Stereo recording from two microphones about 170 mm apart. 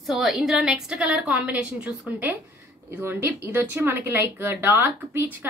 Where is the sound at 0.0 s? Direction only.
Centre (ahead or behind).